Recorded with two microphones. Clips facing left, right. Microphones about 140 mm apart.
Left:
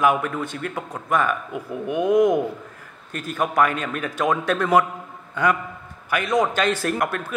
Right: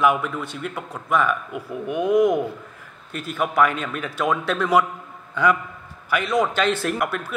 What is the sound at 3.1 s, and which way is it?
Speech, 45° left (ahead or behind).